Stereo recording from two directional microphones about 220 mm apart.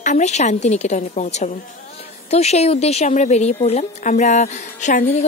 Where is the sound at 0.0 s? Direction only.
35° left (ahead or behind).